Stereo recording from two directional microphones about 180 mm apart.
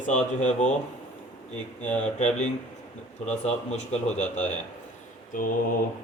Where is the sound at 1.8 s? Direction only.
10° left (ahead or behind).